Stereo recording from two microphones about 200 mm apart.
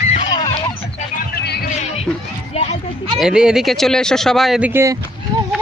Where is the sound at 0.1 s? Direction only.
25° left (ahead or behind).